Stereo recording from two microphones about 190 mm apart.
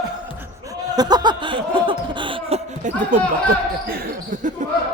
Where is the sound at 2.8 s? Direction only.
40° right (ahead or behind).